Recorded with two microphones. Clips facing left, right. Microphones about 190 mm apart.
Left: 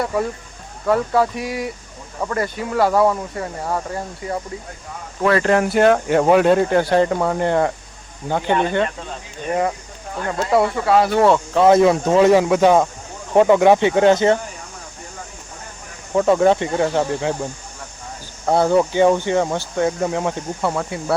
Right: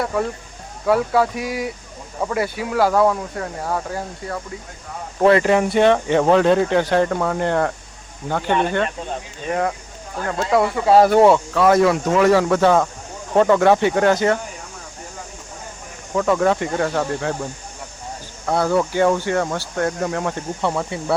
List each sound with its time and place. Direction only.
0.0 s speech: centre (ahead or behind)
5.4 s speech: centre (ahead or behind); by 8.5 s 15° left (ahead or behind)
9.5 s speech: 5° left (ahead or behind)
10.9 s speech: 45° right (ahead or behind)
11.5 s speech: 25° left (ahead or behind)
12.3 s speech: 15° left (ahead or behind)
16.1 s speech: 25° left (ahead or behind)
18.4 s speech: 25° left (ahead or behind)
20.6 s speech: centre (ahead or behind)